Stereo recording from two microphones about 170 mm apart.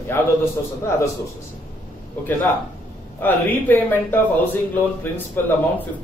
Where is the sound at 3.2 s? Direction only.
10° left (ahead or behind).